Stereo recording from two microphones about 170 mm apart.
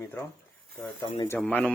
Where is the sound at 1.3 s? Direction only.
10° left (ahead or behind).